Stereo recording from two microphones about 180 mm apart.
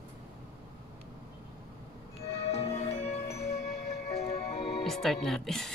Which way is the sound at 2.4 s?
35° left (ahead or behind).